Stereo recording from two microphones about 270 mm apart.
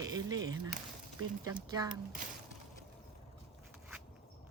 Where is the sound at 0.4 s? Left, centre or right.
Centre.